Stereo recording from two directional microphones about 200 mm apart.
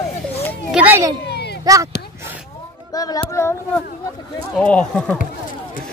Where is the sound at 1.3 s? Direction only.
55° left (ahead or behind).